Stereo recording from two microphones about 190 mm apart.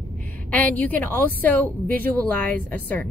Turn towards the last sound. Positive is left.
turn(degrees=10)  # may be behind; listen again after turning